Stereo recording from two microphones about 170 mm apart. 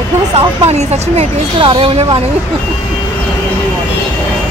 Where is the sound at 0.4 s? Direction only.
40° right (ahead or behind).